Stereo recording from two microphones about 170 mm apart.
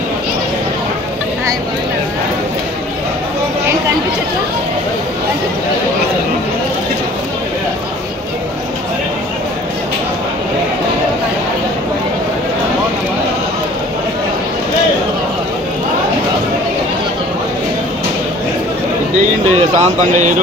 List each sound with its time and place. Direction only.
19.8 s speech: 45° right (ahead or behind)